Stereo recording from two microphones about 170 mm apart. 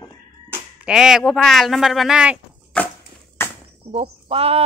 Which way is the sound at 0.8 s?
5° right (ahead or behind).